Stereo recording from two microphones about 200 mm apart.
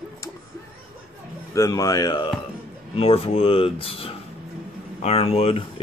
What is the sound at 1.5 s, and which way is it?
Speech, 15° left (ahead or behind).